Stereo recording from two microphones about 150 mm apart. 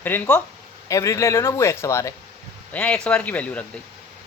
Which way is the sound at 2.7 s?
10° left (ahead or behind).